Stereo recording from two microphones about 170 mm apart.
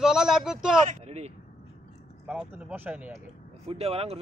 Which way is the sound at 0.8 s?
40° right (ahead or behind).